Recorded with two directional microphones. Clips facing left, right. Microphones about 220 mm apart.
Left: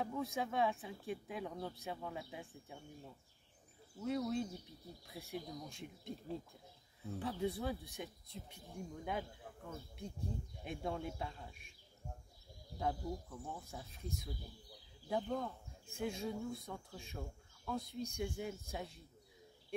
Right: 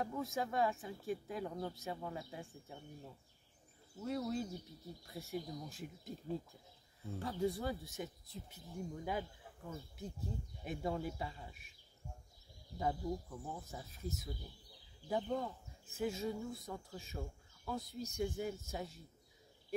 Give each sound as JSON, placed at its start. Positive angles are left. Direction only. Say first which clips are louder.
{"t": 0.0, "sound": "speech", "louder": "even", "side_deg": 0}
{"t": 4.0, "sound": "speech", "louder": "left 1 dB", "side_deg": 0}
{"t": 12.7, "sound": "speech", "louder": "right 2 dB", "side_deg": 0}